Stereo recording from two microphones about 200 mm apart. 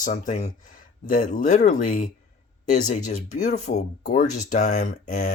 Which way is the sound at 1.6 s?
40° left (ahead or behind).